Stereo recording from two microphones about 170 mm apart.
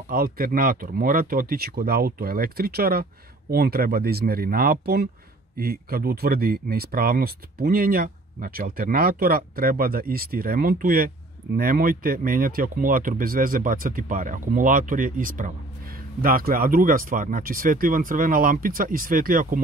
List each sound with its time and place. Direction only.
0.1 s speech: 60° right (ahead or behind)